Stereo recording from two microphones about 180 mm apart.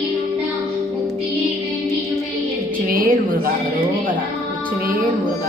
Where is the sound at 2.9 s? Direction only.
50° right (ahead or behind).